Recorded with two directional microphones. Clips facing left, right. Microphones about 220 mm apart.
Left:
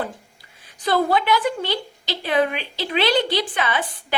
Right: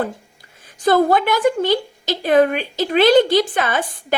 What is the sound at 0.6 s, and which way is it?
A woman's voice, 45° right (ahead or behind).